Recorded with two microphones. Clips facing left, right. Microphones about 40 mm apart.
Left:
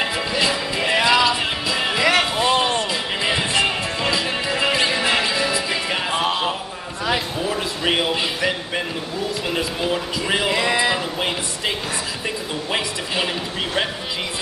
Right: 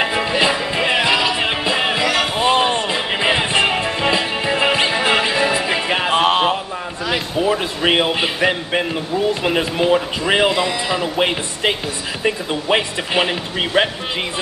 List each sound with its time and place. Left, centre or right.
0.0 s music: right
6.2 s a sound: right
7.4 s speech: right
10.5 s speech: left
11.1 s speech: right